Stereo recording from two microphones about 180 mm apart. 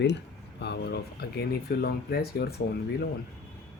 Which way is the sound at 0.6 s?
65° left (ahead or behind).